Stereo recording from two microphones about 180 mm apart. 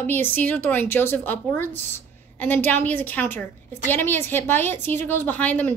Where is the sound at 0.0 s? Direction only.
10° left (ahead or behind).